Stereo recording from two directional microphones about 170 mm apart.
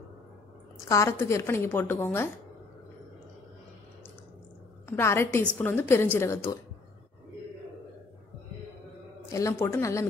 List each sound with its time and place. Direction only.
0.8 s a woman's voice: 15° left (ahead or behind)
4.8 s a woman's voice: 15° left (ahead or behind)
9.3 s a woman's voice: 20° left (ahead or behind)